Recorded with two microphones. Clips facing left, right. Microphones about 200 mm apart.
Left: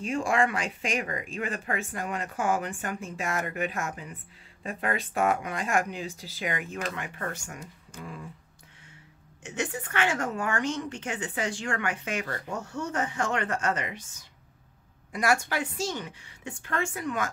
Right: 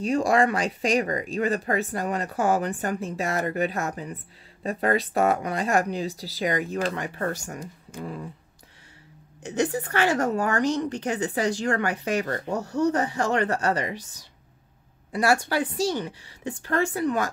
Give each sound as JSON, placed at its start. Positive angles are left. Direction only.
{"t": 0.0, "sound": "a woman's voice", "side_deg": -40}
{"t": 9.4, "sound": "a woman's voice", "side_deg": -35}
{"t": 15.1, "sound": "a woman's voice", "side_deg": -30}